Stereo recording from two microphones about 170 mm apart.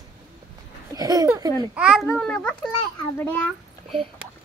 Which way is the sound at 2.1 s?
5° left (ahead or behind).